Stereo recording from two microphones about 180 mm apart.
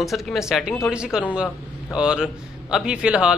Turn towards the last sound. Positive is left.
turn(degrees=-5)  # may be behind; listen again after turning